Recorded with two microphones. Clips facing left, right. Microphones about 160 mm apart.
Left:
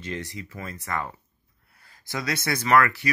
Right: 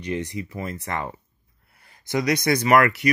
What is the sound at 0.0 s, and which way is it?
Speech, 20° right (ahead or behind).